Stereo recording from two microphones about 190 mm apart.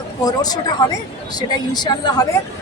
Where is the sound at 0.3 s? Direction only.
20° left (ahead or behind).